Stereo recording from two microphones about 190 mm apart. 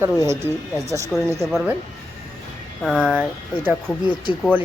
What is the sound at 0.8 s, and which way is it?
Speech, 15° right (ahead or behind).